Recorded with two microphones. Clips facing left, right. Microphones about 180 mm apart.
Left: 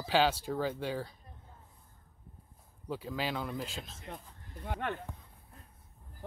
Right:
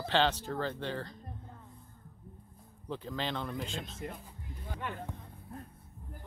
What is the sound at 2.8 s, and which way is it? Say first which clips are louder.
Speech: left 1 dB; 5° left (ahead or behind).